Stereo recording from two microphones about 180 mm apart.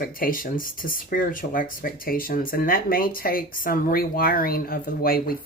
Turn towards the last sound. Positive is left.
turn(degrees=55)  # may be behind; listen again after turning